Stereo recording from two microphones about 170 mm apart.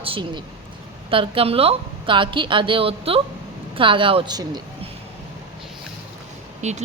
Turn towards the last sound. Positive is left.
turn(degrees=-45)  # may be behind; listen again after turning